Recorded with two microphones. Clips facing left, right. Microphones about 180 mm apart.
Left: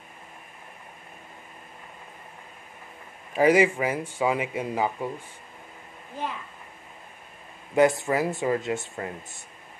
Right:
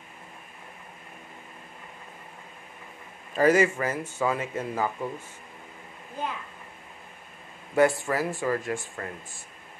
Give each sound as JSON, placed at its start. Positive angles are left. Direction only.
{"t": 3.3, "sound": "speech", "side_deg": 15}
{"t": 7.7, "sound": "speech", "side_deg": 20}